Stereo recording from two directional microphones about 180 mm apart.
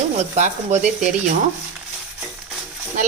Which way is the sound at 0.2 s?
40° right (ahead or behind).